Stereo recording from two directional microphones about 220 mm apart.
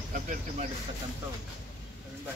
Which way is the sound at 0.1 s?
35° right (ahead or behind).